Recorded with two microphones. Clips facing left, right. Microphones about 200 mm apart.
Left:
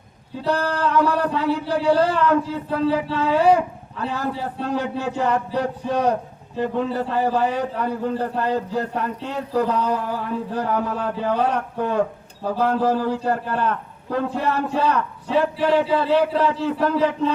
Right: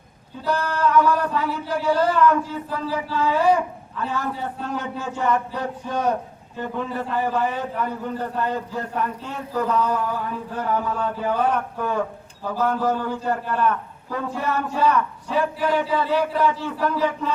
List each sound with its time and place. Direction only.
0.4 s speech: 30° left (ahead or behind)